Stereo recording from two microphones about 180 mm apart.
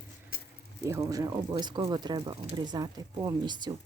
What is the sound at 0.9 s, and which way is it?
Speech, 20° right (ahead or behind).